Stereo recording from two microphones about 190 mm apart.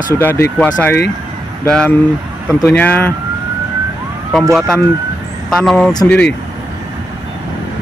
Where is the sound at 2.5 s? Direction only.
10° left (ahead or behind).